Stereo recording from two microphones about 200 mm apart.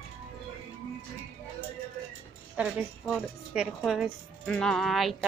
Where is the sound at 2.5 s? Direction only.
5° right (ahead or behind).